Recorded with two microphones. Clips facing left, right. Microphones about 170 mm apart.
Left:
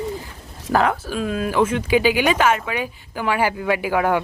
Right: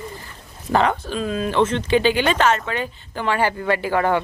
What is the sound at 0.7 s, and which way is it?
Speech, centre (ahead or behind).